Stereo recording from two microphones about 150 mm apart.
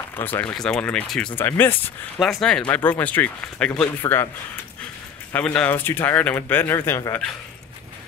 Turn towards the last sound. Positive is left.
turn(degrees=15)  # may be behind; listen again after turning